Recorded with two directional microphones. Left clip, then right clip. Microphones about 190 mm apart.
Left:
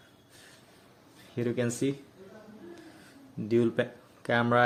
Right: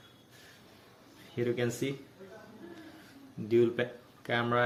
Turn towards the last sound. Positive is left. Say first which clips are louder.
# left 4 dB
turn(degrees=70)  # may be behind; listen again after turning